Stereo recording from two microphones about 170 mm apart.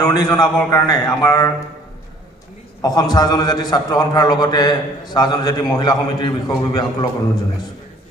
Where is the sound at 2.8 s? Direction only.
25° left (ahead or behind).